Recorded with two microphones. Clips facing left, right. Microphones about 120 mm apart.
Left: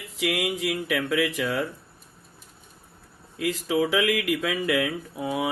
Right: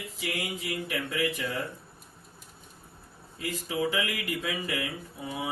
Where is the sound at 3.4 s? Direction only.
85° left.